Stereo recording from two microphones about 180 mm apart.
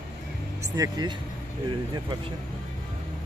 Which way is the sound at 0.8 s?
25° right (ahead or behind).